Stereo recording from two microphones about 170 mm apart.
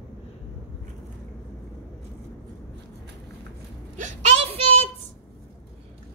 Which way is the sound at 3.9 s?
40° right (ahead or behind).